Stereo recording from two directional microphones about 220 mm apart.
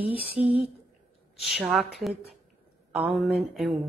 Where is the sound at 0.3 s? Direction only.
25° right (ahead or behind).